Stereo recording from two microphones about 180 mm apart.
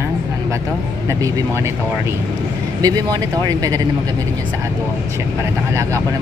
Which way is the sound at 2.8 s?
20° right (ahead or behind).